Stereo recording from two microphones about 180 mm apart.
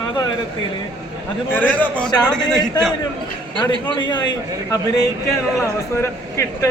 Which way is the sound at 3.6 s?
25° left (ahead or behind).